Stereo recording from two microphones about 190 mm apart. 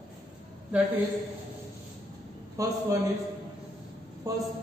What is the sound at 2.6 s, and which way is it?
Speech, 15° right (ahead or behind).